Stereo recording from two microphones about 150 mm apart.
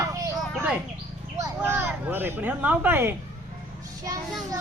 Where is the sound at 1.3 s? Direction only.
20° right (ahead or behind).